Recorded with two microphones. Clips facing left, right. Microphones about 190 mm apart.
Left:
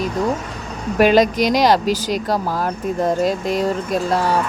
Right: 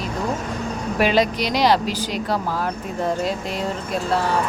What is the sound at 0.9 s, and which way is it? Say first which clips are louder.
Speech: left 6 dB; 45° left (ahead or behind).